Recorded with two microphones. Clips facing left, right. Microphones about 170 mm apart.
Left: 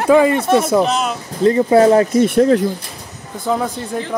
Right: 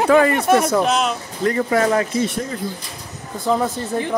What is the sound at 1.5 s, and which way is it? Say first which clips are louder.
Speech: left 7 dB; 25° left (ahead or behind).